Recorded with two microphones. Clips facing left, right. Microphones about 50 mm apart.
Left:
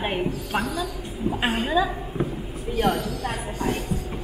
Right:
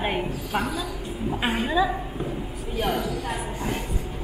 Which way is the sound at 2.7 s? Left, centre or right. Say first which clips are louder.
Left 3 dB; centre.